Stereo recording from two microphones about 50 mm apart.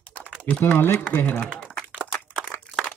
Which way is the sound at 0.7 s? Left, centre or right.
Left.